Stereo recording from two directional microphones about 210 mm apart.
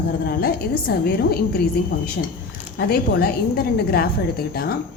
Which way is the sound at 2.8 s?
50° left (ahead or behind).